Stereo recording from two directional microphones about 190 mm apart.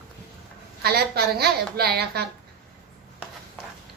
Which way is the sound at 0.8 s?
55° right (ahead or behind).